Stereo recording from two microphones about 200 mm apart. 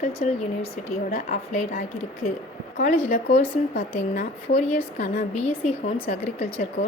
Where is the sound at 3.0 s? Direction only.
40° left (ahead or behind).